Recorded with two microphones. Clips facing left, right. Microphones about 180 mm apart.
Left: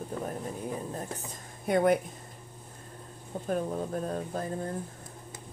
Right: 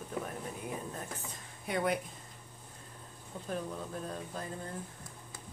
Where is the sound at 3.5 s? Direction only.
45° left (ahead or behind).